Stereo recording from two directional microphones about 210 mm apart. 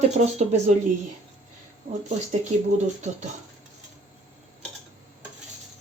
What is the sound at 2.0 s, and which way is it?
Speech, 35° right (ahead or behind).